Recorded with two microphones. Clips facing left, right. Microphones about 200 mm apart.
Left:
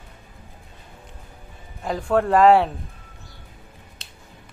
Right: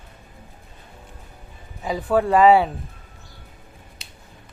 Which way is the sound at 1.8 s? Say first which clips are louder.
Even; 5° right (ahead or behind).